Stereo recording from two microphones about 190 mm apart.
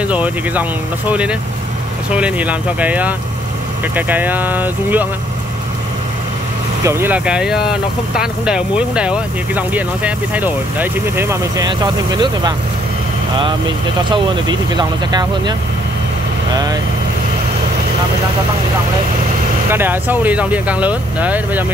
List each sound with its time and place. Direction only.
0.0 s speech: 5° right (ahead or behind)
6.8 s speech: 15° right (ahead or behind)
14.1 s speech: 25° right (ahead or behind)
19.7 s speech: 10° right (ahead or behind)